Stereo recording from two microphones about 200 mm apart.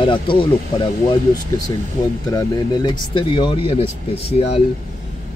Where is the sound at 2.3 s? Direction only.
20° left (ahead or behind).